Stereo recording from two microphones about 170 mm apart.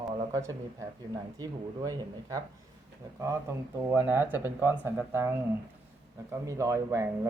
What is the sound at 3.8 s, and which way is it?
Speech, 15° right (ahead or behind).